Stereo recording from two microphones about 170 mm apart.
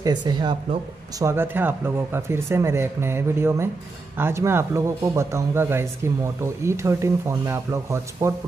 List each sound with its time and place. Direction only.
0.0 s speech: 25° right (ahead or behind)
1.2 s speech: 15° right (ahead or behind)